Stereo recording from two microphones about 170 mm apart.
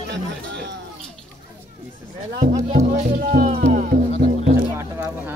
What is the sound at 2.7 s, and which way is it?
Speech, 45° right (ahead or behind).